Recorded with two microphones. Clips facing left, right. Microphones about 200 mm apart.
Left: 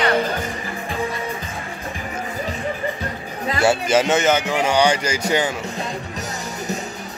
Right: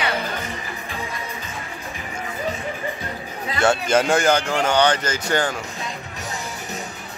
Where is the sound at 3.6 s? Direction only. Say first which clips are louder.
Left 1 dB; 5° left (ahead or behind).